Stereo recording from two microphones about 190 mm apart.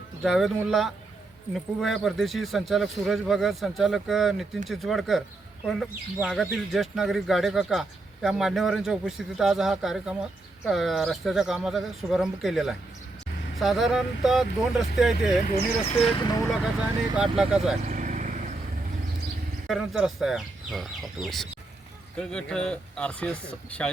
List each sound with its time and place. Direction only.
0.2 s speech: centre (ahead or behind)
15.5 s speech: 30° left (ahead or behind)
17.2 s speech: 5° right (ahead or behind)
17.8 s vehicle: 45° right (ahead or behind)
19.6 s speech: centre (ahead or behind)